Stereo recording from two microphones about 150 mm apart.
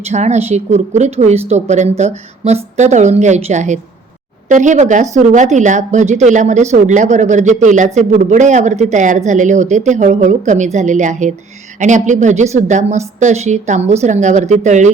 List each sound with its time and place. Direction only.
0.0 s a woman's voice: 50° right (ahead or behind)